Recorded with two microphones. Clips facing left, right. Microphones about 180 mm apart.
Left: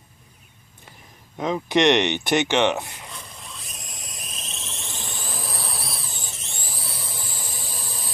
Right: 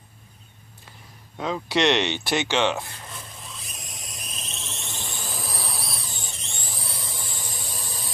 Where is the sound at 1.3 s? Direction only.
20° left (ahead or behind).